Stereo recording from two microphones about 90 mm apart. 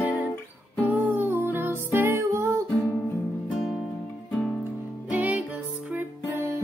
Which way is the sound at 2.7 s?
35° left (ahead or behind).